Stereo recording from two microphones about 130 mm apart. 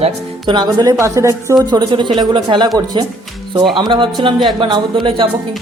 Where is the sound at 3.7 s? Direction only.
40° right (ahead or behind).